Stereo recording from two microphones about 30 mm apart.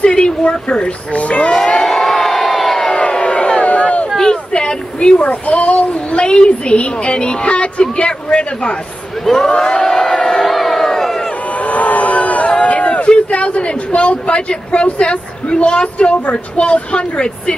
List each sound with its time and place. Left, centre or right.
0.1 s a child's voice: left
1.6 s crowd: left
1.9 s crowd: centre
2.9 s crowd: left
3.6 s a sound: left
4.2 s a sound: left
5.2 s a child's voice: left
9.2 s speech: centre
9.7 s crowd: left
9.9 s crowd: centre
10.4 s crowd: centre
10.9 s a sound: centre
11.6 s crowd: left
12.5 s a child's voice: left